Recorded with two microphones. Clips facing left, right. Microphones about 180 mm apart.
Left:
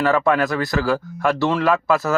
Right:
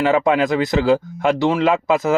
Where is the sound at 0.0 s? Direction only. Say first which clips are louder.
Right 2 dB; 20° right (ahead or behind).